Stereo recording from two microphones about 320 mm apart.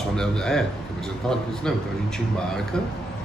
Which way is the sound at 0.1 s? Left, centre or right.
Centre.